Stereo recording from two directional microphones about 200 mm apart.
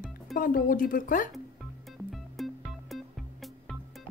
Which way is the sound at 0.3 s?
45° left (ahead or behind).